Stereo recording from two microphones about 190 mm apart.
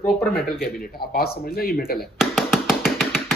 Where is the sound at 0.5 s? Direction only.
50° left (ahead or behind).